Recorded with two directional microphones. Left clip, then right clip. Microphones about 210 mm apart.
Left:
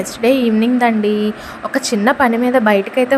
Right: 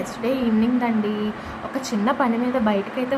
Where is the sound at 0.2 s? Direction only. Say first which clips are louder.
Left 9 dB; 25° left (ahead or behind).